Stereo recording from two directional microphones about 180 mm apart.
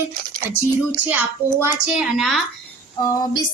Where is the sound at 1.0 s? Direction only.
10° right (ahead or behind).